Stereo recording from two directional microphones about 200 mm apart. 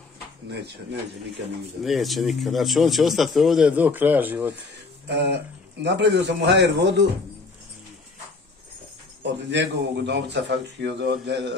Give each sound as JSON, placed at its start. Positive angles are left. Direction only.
{"t": 1.8, "sound": "speech", "side_deg": 0}
{"t": 5.0, "sound": "a man's voice", "side_deg": -60}
{"t": 9.2, "sound": "a man's voice", "side_deg": -60}